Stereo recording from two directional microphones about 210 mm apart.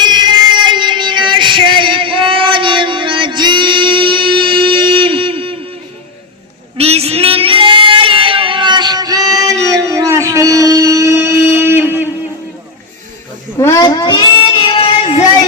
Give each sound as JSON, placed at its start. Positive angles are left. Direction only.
{"t": 0.0, "sound": "child singing", "side_deg": -20}
{"t": 6.7, "sound": "child singing", "side_deg": -30}
{"t": 13.6, "sound": "child singing", "side_deg": 15}